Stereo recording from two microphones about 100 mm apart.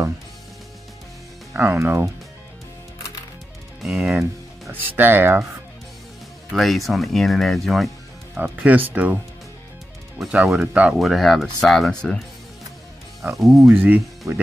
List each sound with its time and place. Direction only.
1.5 s speech: 20° right (ahead or behind)
3.8 s speech: 5° right (ahead or behind)
4.7 s speech: 20° right (ahead or behind)
6.5 s speech: centre (ahead or behind)
8.4 s speech: 15° right (ahead or behind)
10.1 s speech: 5° right (ahead or behind)
11.0 s speech: centre (ahead or behind)
13.4 s speech: centre (ahead or behind)
13.7 s speech: 20° right (ahead or behind)